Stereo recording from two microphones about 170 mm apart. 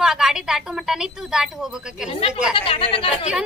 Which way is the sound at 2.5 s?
30° left (ahead or behind).